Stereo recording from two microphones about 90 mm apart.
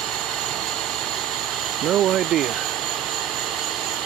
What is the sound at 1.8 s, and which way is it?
Speech, 5° right (ahead or behind).